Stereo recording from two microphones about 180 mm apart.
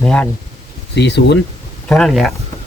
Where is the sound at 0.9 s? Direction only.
70° left (ahead or behind).